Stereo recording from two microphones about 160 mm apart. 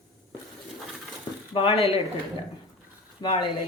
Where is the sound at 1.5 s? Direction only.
35° left (ahead or behind).